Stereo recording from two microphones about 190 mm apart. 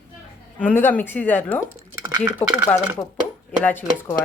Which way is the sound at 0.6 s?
10° left (ahead or behind).